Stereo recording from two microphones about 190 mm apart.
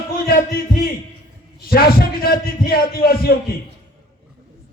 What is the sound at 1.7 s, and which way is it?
A man's voice, 50° left (ahead or behind).